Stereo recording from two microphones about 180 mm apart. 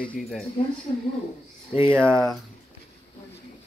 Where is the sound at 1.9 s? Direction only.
5° left (ahead or behind).